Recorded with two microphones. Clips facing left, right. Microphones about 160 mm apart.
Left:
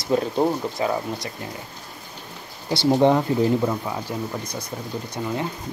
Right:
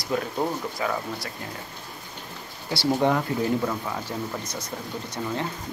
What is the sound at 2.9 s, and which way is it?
Speech, 25° left (ahead or behind).